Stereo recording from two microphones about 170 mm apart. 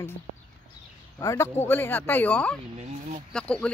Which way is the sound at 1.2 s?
20° left (ahead or behind).